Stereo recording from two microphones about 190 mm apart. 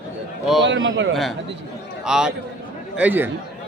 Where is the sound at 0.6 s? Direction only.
75° right (ahead or behind).